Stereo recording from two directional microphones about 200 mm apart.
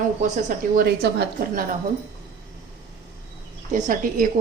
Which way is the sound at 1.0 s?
55° right (ahead or behind).